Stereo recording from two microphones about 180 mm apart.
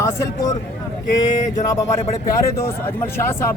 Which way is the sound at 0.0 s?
15° left (ahead or behind).